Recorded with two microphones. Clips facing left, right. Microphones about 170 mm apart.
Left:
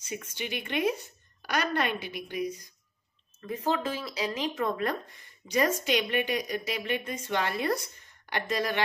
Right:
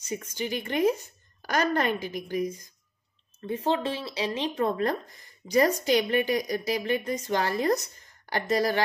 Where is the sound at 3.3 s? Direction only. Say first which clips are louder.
Right 3 dB; 30° right (ahead or behind).